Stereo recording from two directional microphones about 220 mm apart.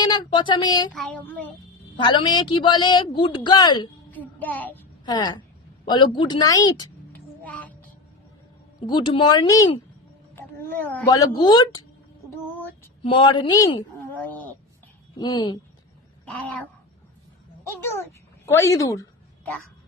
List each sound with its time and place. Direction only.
0.0 s a man's voice: 20° left (ahead or behind)
0.9 s music: 5° left (ahead or behind)
2.0 s a man's voice: 20° left (ahead or behind)
4.1 s music: 5° left (ahead or behind)
5.0 s a man's voice: 20° left (ahead or behind)
8.9 s a man's voice: 20° left (ahead or behind)
13.0 s speech: 25° left (ahead or behind); by 14.5 s 5° left (ahead or behind)
15.2 s a man's voice: 20° left (ahead or behind)
16.2 s a child's voice: 5° left (ahead or behind)
18.4 s music: 15° left (ahead or behind)